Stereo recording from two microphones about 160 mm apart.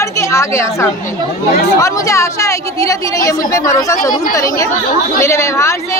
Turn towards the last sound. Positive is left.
turn(degrees=15)  # may be behind; listen again after turning